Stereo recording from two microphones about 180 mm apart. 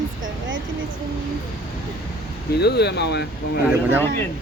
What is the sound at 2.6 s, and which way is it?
Speech, 65° left (ahead or behind).